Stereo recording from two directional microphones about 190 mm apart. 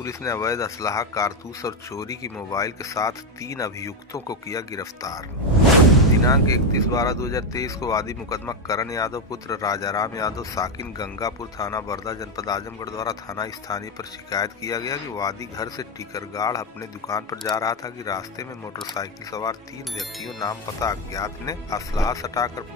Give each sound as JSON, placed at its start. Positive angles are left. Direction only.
{"t": 0.0, "sound": "speech", "side_deg": 15}
{"t": 6.2, "sound": "speech", "side_deg": 20}
{"t": 20.0, "sound": "speech", "side_deg": 0}
{"t": 20.3, "sound": "speech", "side_deg": 20}